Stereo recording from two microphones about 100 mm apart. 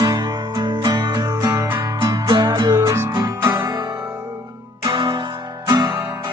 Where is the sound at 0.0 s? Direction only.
45° right (ahead or behind).